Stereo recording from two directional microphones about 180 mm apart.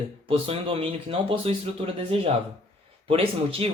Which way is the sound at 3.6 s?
30° right (ahead or behind).